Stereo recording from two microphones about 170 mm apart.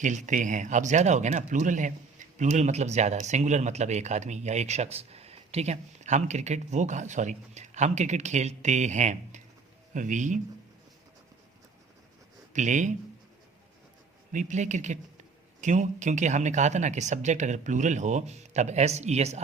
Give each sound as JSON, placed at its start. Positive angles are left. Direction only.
{"t": 0.0, "sound": "speech", "side_deg": -45}
{"t": 12.5, "sound": "speech", "side_deg": -45}
{"t": 14.3, "sound": "speech", "side_deg": -45}